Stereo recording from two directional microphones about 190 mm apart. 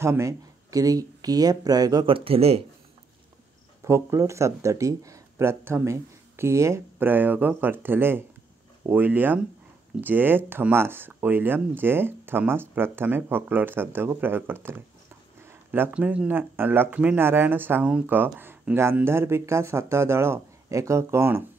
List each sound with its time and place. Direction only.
0.0 s speech: 15° right (ahead or behind); by 2.6 s 30° right (ahead or behind)
3.8 s speech: 15° right (ahead or behind)